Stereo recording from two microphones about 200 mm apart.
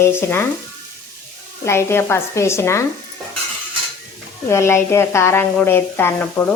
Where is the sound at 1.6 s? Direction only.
15° left (ahead or behind).